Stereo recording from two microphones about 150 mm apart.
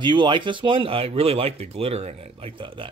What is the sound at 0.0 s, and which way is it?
Speech, 30° right (ahead or behind).